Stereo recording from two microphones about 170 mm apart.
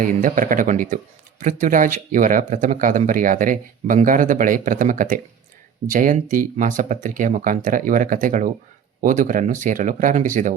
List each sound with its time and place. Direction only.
0.0 s speech: 50° right (ahead or behind)